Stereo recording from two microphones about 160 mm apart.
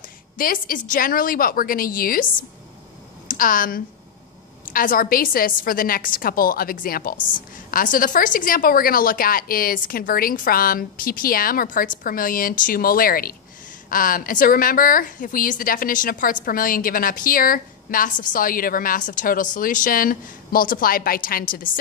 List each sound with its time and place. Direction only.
0.4 s a woman's voice: 60° left (ahead or behind)
3.3 s a woman's voice: 60° left (ahead or behind)